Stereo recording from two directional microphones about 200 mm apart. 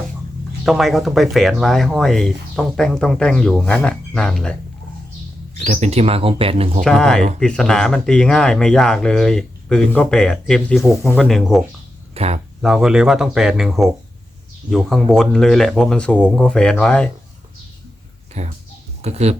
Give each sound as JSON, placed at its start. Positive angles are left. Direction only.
{"t": 0.6, "sound": "speech", "side_deg": 0}
{"t": 5.5, "sound": "speech", "side_deg": -35}
{"t": 6.8, "sound": "speech", "side_deg": 5}
{"t": 12.1, "sound": "speech", "side_deg": -30}
{"t": 12.6, "sound": "speech", "side_deg": -5}
{"t": 18.4, "sound": "speech", "side_deg": -35}